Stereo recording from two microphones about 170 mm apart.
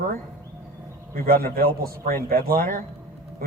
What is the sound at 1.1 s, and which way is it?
A man's voice, 60° right (ahead or behind).